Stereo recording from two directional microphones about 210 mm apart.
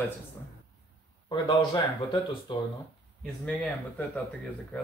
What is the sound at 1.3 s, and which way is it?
Speech, 20° left (ahead or behind).